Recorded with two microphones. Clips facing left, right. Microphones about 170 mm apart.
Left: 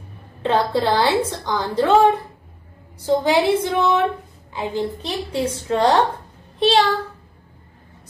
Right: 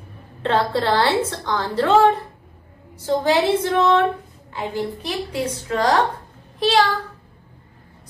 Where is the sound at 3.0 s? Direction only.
15° left (ahead or behind).